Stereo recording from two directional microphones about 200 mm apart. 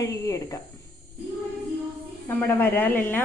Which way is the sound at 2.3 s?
10° left (ahead or behind).